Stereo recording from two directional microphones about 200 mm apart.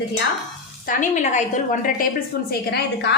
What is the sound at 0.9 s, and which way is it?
Speech, 40° left (ahead or behind).